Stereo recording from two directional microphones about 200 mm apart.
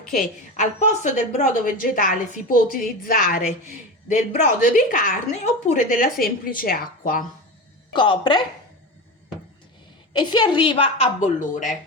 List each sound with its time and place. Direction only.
0.5 s a woman's voice: 35° left (ahead or behind)
7.9 s a woman's voice: 25° left (ahead or behind)
10.1 s a woman's voice: 20° left (ahead or behind); by 11.8 s 40° left (ahead or behind)